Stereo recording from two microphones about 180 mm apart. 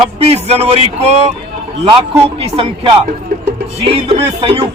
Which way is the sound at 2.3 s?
30° right (ahead or behind).